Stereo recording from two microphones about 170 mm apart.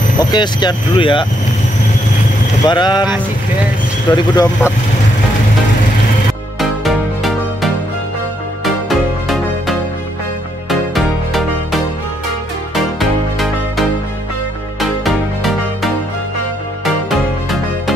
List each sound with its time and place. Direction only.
0.2 s speech: 25° left (ahead or behind)
2.6 s speech: 25° left (ahead or behind)
4.1 s speech: 25° left (ahead or behind)
6.6 s music: centre (ahead or behind)